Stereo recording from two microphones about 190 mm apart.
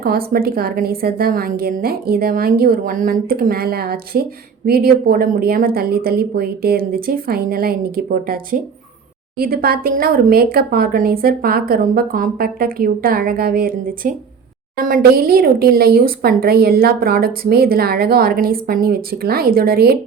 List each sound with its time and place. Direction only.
0.0 s speech: 50° right (ahead or behind)